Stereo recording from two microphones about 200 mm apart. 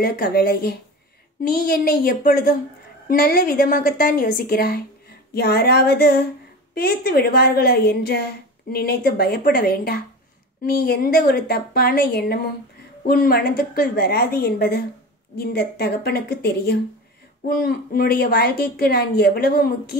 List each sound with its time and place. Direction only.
0.0 s a woman's voice: 50° left (ahead or behind)